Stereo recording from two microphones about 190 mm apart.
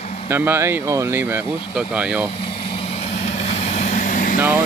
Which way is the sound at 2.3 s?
30° left (ahead or behind).